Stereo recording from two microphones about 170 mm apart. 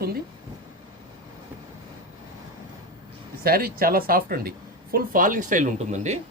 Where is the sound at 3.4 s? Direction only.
60° right (ahead or behind).